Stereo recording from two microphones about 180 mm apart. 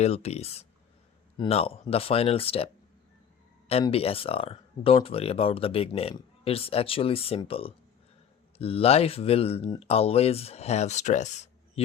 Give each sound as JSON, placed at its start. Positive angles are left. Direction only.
{"t": 0.0, "sound": "speech", "side_deg": 35}
{"t": 3.7, "sound": "speech", "side_deg": 30}